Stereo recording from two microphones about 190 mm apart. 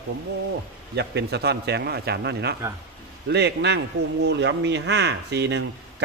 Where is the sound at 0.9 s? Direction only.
60° right (ahead or behind).